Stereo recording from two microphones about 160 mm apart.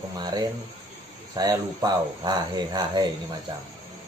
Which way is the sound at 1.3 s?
25° right (ahead or behind).